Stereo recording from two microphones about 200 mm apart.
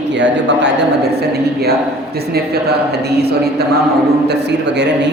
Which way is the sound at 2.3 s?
55° right (ahead or behind).